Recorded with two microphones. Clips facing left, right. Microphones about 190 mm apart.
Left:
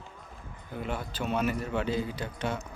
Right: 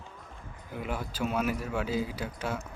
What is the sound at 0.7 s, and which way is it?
A man's voice, 10° right (ahead or behind).